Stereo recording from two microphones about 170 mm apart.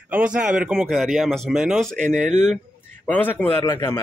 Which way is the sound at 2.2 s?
45° right (ahead or behind).